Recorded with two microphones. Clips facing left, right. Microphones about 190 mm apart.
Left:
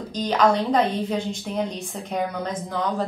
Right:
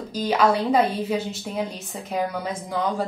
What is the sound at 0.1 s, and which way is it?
A woman's voice, 5° right (ahead or behind).